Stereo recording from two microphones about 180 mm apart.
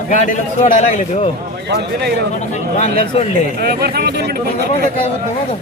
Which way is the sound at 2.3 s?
40° left (ahead or behind).